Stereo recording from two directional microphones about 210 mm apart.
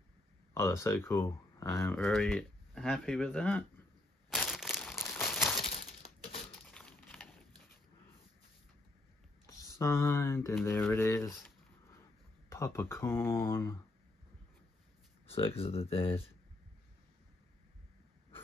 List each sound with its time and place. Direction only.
0.6 s speech: 15° left (ahead or behind)
2.0 s speech: centre (ahead or behind)
4.3 s crushing: centre (ahead or behind)
4.9 s crumpling: 10° left (ahead or behind)
6.7 s a sound: 5° left (ahead or behind)
9.5 s speech: 15° left (ahead or behind)
12.4 s speech: 15° left (ahead or behind)
15.3 s speech: 25° left (ahead or behind)